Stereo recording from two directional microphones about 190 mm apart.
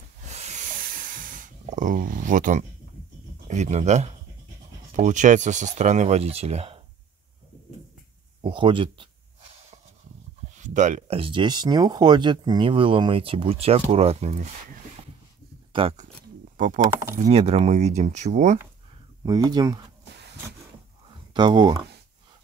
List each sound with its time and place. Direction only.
0.3 s hiss: 35° right (ahead or behind)
3.4 s speech: 35° right (ahead or behind)
8.4 s speech: 25° right (ahead or behind)
10.5 s speech: 40° right (ahead or behind)
15.7 s speech: 30° right (ahead or behind)
16.5 s speech: 45° right (ahead or behind)
17.2 s speech: 35° right (ahead or behind)
19.2 s speech: 20° right (ahead or behind)
21.3 s speech: 25° right (ahead or behind)